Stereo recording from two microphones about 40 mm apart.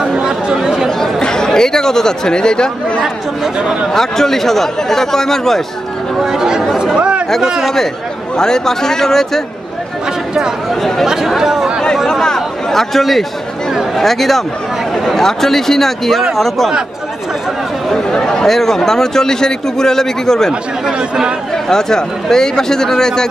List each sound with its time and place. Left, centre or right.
0.0 s chatter: centre
1.2 s a man's voice: centre
6.1 s speech: centre
7.0 s a sound: right
7.6 s a man's voice: centre
10.7 s speech: centre
11.2 s speech: centre
12.1 s a sound: centre
13.9 s a man's voice: centre
17.9 s speech: centre
18.4 s a man's voice: centre
21.6 s a man's voice: centre